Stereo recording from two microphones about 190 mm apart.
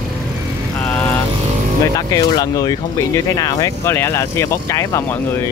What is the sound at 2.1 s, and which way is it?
Speech, 20° left (ahead or behind).